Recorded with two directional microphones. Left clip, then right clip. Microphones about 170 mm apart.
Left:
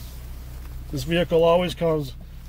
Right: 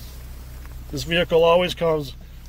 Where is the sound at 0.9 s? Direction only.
20° left (ahead or behind).